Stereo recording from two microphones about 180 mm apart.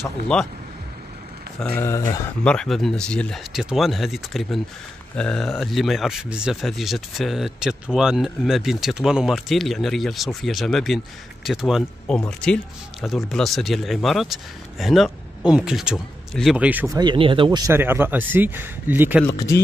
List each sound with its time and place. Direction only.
1.8 s speech: 15° left (ahead or behind)
2.4 s speech: 5° left (ahead or behind)
16.9 s speech: 25° right (ahead or behind); by 19.2 s 10° right (ahead or behind)
19.2 s speech: 15° left (ahead or behind)